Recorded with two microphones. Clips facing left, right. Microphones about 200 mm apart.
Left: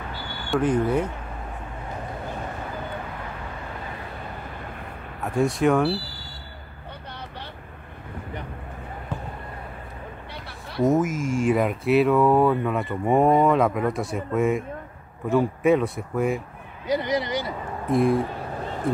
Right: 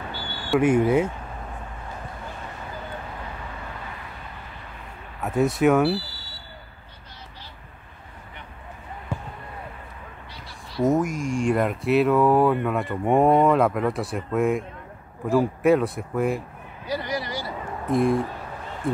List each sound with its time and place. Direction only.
0.5 s speech: 10° right (ahead or behind)
5.2 s speech: centre (ahead or behind)
10.8 s speech: centre (ahead or behind)
16.8 s a sound: 20° left (ahead or behind)
17.8 s speech: centre (ahead or behind)